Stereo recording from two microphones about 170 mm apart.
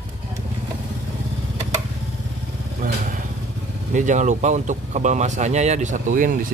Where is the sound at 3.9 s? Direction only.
45° right (ahead or behind).